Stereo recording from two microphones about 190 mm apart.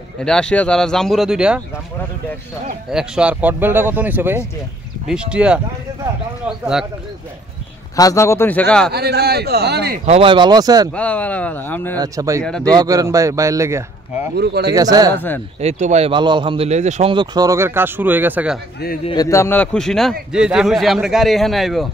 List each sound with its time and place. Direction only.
0.2 s a man's voice: 5° left (ahead or behind)
2.9 s a man's voice: 5° right (ahead or behind)
7.9 s speech: 15° left (ahead or behind)
8.9 s speech: 60° right (ahead or behind)
10.0 s speech: 30° right (ahead or behind)
10.9 s speech: 5° left (ahead or behind)
12.0 s speech: 15° right (ahead or behind)
14.3 s speech: 60° right (ahead or behind)
14.7 s speech: 20° right (ahead or behind)
15.1 s speech: 10° left (ahead or behind)
15.6 s a man's voice: 35° right (ahead or behind)
17.1 s speech: 25° right (ahead or behind); by 18.6 s 10° right (ahead or behind)
19.0 s a man's voice: 20° left (ahead or behind); by 21.8 s centre (ahead or behind)